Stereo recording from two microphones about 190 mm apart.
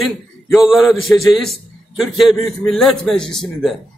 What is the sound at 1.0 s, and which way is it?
A man's voice, centre (ahead or behind).